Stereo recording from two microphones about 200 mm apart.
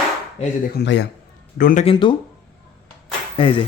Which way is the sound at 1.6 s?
45° left (ahead or behind).